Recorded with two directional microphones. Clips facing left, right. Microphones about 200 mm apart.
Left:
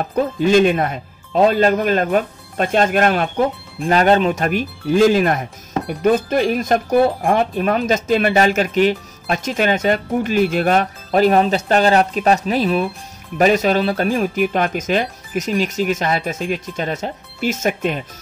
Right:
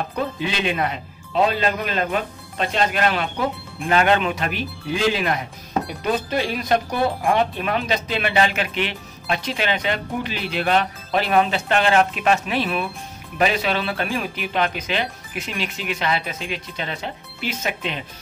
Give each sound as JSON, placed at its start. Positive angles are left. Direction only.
{"t": 0.1, "sound": "speech", "side_deg": 45}